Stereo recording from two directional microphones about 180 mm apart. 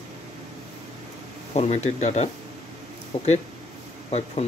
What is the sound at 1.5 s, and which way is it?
Speech, 40° left (ahead or behind).